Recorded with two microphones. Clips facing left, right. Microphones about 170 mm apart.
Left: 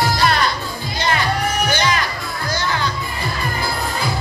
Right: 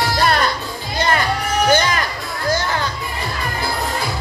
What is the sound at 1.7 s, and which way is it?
Music, 50° right (ahead or behind).